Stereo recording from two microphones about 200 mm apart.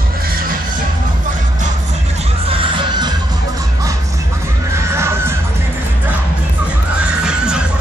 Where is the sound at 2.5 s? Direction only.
25° right (ahead or behind).